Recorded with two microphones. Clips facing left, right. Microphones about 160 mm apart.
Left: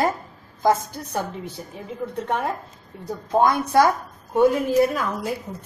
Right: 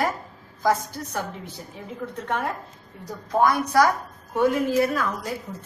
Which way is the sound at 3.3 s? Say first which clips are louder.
Left 2 dB; 25° left (ahead or behind).